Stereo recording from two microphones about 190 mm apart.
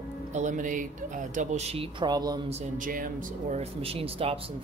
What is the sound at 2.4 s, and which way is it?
Speech, 40° right (ahead or behind).